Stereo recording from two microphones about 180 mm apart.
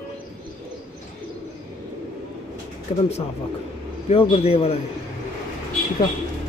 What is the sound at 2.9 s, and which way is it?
Speech, 35° left (ahead or behind).